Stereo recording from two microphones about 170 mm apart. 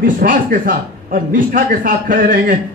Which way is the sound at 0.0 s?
55° right (ahead or behind).